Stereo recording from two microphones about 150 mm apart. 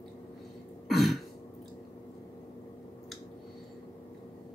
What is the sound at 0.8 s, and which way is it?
Throat clearing, centre (ahead or behind).